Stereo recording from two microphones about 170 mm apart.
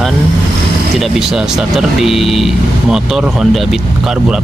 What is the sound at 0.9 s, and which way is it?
Speech, centre (ahead or behind).